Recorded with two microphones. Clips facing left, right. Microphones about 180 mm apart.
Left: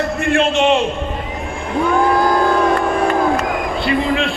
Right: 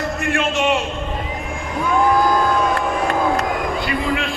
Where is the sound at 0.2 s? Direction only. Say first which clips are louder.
Left 6 dB; 30° left (ahead or behind).